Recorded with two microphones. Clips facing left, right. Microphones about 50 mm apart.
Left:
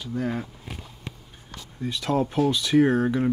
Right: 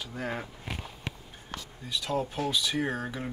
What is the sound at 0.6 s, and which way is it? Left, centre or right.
Walk, right.